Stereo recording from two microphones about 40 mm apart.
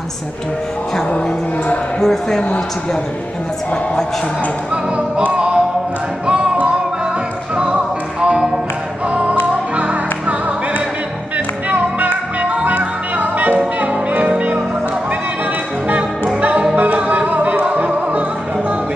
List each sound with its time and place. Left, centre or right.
0.9 s speech: centre
4.9 s music: right
9.0 s music: right
16.3 s music: right
17.7 s opera: right